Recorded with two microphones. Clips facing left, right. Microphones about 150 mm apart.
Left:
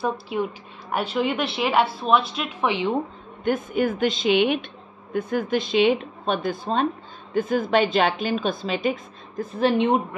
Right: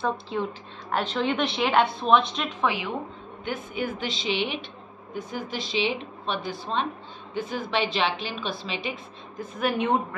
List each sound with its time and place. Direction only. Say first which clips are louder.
0.0 s a woman's voice: left 2 dB; 10° left (ahead or behind)
3.4 s a woman's voice: left 8 dB; 50° left (ahead or behind)
9.6 s a woman's voice: left 5 dB; 25° left (ahead or behind)